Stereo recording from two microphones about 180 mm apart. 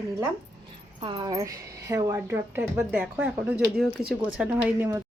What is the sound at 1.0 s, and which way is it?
Speech, 25° right (ahead or behind).